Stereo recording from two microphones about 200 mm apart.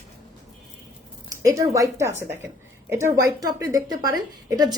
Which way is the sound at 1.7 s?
15° right (ahead or behind).